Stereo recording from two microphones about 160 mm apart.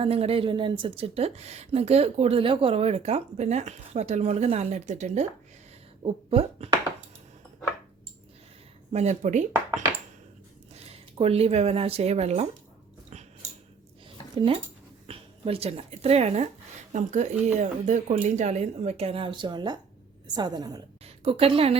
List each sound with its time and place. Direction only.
0.0 s speech: 40° right (ahead or behind)
8.9 s speech: 45° right (ahead or behind)
10.8 s speech: 40° right (ahead or behind)
14.3 s a woman's voice: 35° right (ahead or behind)
21.0 s a woman's voice: 35° right (ahead or behind)